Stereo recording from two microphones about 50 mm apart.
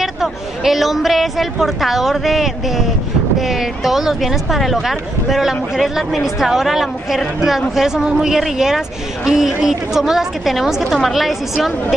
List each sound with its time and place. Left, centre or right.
0.0 s a woman's voice: centre